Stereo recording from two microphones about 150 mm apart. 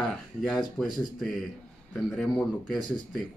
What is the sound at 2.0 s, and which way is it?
Speech, 5° left (ahead or behind).